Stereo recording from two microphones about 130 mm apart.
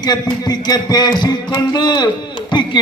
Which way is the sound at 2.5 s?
35° left (ahead or behind).